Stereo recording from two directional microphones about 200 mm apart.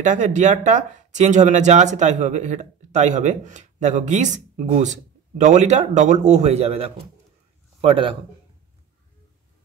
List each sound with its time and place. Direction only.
0.0 s a man's voice: 40° right (ahead or behind)